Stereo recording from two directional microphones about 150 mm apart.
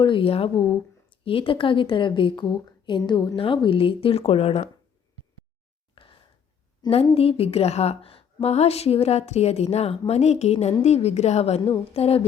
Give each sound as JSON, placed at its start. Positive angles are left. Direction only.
{"t": 0.0, "sound": "a woman's voice", "side_deg": 35}
{"t": 5.9, "sound": "a sound", "side_deg": 35}
{"t": 6.9, "sound": "a woman's voice", "side_deg": 40}